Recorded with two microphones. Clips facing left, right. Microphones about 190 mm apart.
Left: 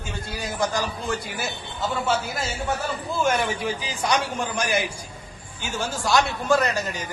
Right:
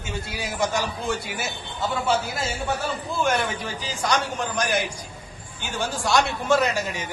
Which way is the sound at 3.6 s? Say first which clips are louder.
Left 2 dB; 10° left (ahead or behind).